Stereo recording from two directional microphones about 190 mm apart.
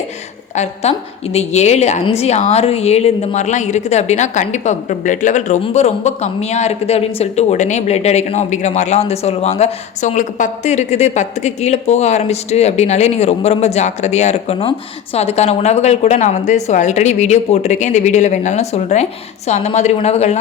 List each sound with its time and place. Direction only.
0.5 s a woman's voice: 35° left (ahead or behind)